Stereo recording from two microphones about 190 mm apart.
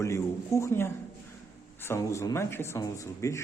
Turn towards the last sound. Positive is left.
turn(degrees=15)  # may be behind; listen again after turning